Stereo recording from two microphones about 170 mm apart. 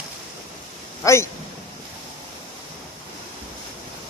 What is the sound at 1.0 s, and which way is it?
Speech, 20° left (ahead or behind).